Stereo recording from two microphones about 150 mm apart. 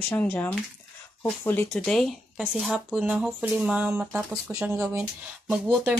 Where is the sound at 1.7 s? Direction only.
5° left (ahead or behind).